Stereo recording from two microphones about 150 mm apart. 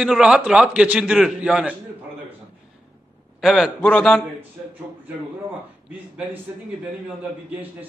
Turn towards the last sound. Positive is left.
turn(degrees=-10)  # may be behind; listen again after turning